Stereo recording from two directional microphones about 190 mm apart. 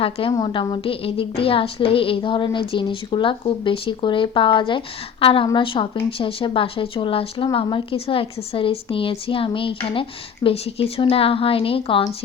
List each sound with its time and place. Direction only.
0.0 s speech: 25° left (ahead or behind)